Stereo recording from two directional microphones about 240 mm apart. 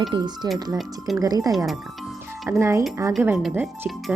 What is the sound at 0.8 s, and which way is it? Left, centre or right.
Speech, centre.